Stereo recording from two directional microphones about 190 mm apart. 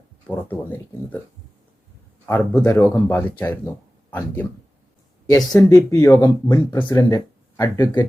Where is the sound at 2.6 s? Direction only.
15° left (ahead or behind).